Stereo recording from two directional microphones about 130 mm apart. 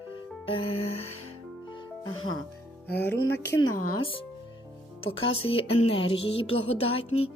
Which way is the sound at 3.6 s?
30° left (ahead or behind).